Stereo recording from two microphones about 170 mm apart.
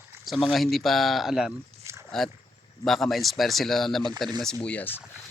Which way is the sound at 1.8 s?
15° right (ahead or behind).